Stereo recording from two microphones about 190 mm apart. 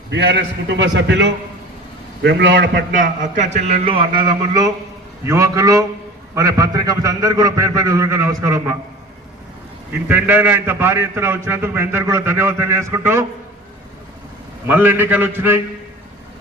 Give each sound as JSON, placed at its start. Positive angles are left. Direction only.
{"t": 0.1, "sound": "a man's voice", "side_deg": -70}
{"t": 2.9, "sound": "a man's voice", "side_deg": -40}
{"t": 10.1, "sound": "a man's voice", "side_deg": -10}
{"t": 14.7, "sound": "a man's voice", "side_deg": -10}